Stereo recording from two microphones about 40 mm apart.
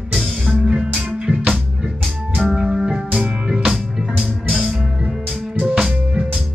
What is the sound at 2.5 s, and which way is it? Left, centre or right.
Music, centre.